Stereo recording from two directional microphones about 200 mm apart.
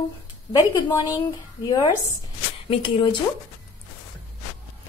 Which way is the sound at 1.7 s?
20° left (ahead or behind).